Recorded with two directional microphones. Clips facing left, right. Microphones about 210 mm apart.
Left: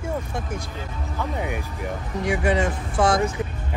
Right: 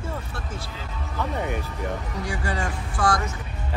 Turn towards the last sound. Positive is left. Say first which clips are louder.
# left 4 dB
turn(degrees=20)  # may be behind; listen again after turning